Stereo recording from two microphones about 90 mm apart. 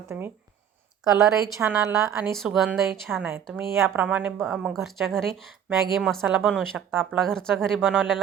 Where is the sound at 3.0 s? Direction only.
25° right (ahead or behind).